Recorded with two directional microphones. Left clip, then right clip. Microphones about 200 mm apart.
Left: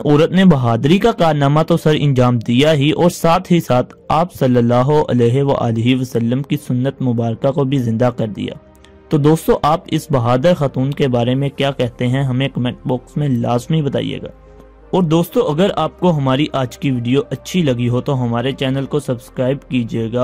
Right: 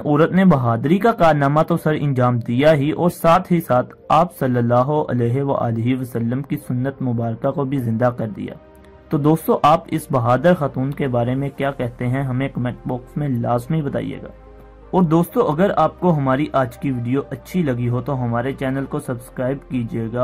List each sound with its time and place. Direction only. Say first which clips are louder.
0.0 s a man's voice: left 3 dB; 40° left (ahead or behind)